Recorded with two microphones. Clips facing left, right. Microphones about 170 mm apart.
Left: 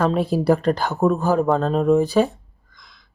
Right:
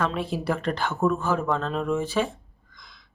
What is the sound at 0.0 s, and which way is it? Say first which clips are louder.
Speech: left 8 dB; 40° left (ahead or behind).